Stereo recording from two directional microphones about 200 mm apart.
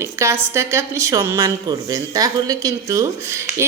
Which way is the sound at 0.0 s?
15° right (ahead or behind).